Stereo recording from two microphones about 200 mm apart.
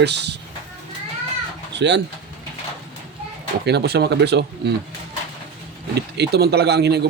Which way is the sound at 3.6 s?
55° right (ahead or behind).